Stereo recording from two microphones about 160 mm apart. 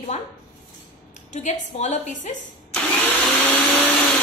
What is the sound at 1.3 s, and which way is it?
A woman's voice, 45° left (ahead or behind).